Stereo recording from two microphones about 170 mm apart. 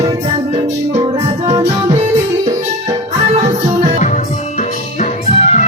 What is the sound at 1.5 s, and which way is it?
Music, 35° right (ahead or behind).